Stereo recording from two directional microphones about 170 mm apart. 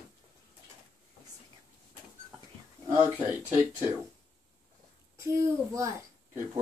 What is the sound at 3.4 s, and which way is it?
Speech, 10° right (ahead or behind).